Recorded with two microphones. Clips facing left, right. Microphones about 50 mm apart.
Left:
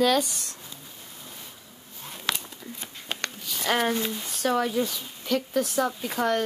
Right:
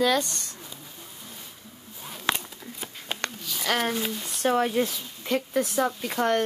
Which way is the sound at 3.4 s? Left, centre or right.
Centre.